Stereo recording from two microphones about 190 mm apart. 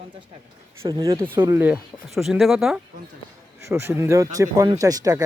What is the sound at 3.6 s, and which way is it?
Speech, 15° right (ahead or behind).